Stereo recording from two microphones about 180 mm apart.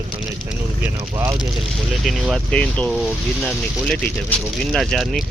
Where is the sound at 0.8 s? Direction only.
15° right (ahead or behind).